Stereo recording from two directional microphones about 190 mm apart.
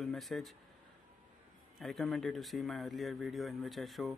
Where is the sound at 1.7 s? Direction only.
Centre (ahead or behind).